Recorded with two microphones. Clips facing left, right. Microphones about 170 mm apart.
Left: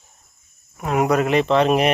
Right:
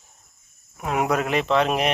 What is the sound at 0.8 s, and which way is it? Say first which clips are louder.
Speech: left 4 dB; centre (ahead or behind).